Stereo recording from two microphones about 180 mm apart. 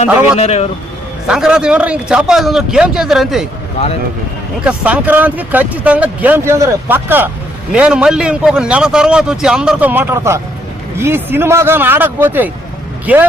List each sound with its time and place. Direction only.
0.3 s a man's voice: 35° left (ahead or behind)
1.3 s a man's voice: 5° right (ahead or behind)
4.6 s a man's voice: 10° right (ahead or behind)